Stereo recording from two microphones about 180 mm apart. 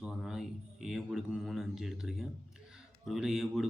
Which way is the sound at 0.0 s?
5° right (ahead or behind).